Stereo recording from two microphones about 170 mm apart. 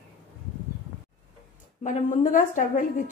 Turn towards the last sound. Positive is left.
turn(degrees=50)  # may be behind; listen again after turning